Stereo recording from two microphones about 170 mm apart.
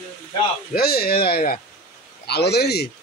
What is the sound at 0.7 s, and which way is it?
A man's voice, 65° left (ahead or behind).